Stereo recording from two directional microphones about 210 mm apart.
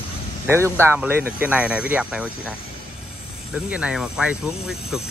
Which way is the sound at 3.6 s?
5° right (ahead or behind).